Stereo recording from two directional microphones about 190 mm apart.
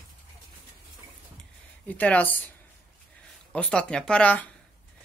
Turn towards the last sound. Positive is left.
turn(degrees=5)  # may be behind; listen again after turning